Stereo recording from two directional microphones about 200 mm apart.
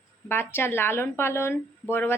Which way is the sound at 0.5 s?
10° left (ahead or behind).